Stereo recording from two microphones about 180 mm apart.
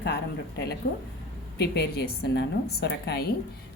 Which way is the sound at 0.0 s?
65° left (ahead or behind).